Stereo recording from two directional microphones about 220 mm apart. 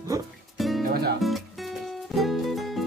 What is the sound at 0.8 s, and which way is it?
Speech, 45° right (ahead or behind).